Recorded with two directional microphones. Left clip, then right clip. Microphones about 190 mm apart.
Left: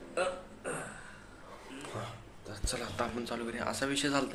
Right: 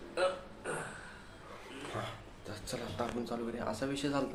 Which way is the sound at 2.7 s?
5° right (ahead or behind).